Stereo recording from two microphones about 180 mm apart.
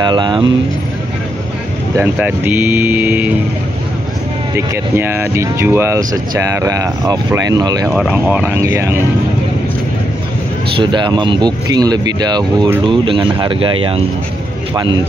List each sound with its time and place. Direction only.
0.0 s speech: 25° right (ahead or behind)
2.0 s speech: 10° right (ahead or behind)
4.6 s speech: 10° right (ahead or behind)
7.9 s speech: 5° right (ahead or behind)
10.8 s speech: 25° right (ahead or behind)